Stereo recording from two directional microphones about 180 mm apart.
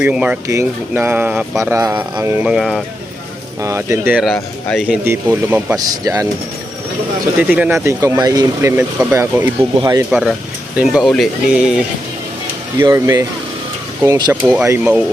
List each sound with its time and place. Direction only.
0.0 s speech: 5° right (ahead or behind)
3.6 s speech: 15° right (ahead or behind)
4.2 s speech: centre (ahead or behind)
5.0 s speech: 10° right (ahead or behind)
7.3 s speech: 10° right (ahead or behind)
10.1 s speech: 5° right (ahead or behind)
12.8 s speech: 20° right (ahead or behind)